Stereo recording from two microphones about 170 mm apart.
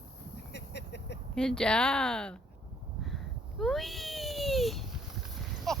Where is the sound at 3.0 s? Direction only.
Centre (ahead or behind).